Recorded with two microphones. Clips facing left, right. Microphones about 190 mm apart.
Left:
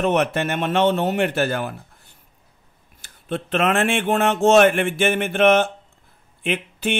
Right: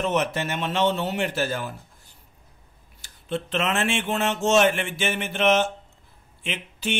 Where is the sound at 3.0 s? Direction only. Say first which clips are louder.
Left 2 dB; 55° left (ahead or behind).